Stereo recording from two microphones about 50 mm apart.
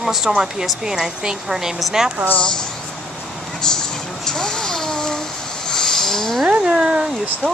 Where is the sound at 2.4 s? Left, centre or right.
Centre.